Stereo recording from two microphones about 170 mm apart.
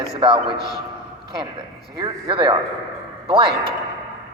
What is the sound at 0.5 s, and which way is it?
Speech, 70° right (ahead or behind).